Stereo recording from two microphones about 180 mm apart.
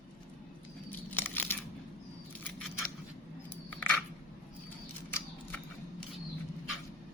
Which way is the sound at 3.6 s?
10° left (ahead or behind).